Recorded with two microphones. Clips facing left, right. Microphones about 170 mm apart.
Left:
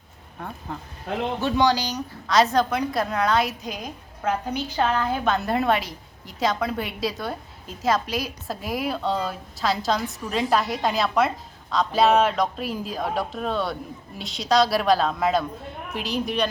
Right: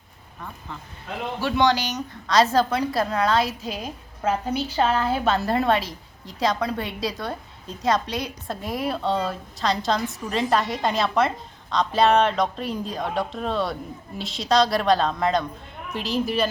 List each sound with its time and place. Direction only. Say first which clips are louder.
0.3 s speech: left 4 dB; 50° left (ahead or behind)
1.4 s speech: right 1 dB; 15° left (ahead or behind)
2.2 s a woman's voice: right 1 dB; centre (ahead or behind)